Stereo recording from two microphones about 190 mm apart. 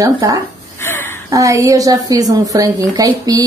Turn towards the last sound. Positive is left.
turn(degrees=-20)  # may be behind; listen again after turning